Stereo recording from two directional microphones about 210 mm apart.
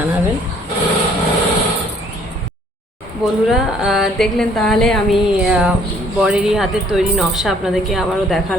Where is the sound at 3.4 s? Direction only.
Centre (ahead or behind).